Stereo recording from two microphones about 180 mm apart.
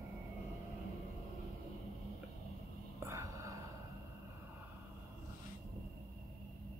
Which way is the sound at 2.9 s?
15° right (ahead or behind).